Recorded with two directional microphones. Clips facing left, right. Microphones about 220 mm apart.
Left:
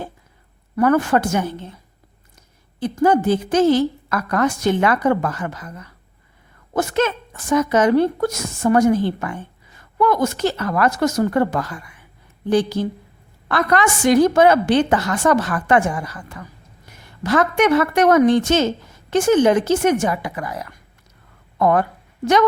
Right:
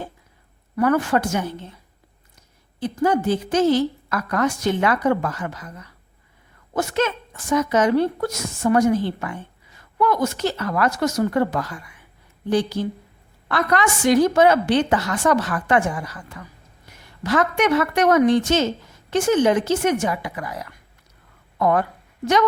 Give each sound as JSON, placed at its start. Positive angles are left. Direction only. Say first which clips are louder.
{"t": 0.8, "sound": "a woman's voice", "louder": "left 3 dB", "side_deg": 50}
{"t": 3.0, "sound": "a woman's voice", "louder": "left 4 dB", "side_deg": 50}
{"t": 6.7, "sound": "a woman's voice", "louder": "left 3 dB", "side_deg": 50}
{"t": 13.5, "sound": "a woman's voice", "louder": "left 2 dB", "side_deg": 50}
{"t": 17.2, "sound": "a woman's voice", "louder": "left 3 dB", "side_deg": 50}